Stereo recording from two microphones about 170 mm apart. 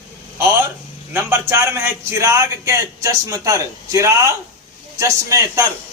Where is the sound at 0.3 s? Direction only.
15° right (ahead or behind).